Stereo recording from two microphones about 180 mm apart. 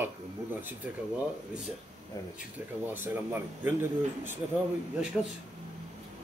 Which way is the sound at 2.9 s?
10° right (ahead or behind).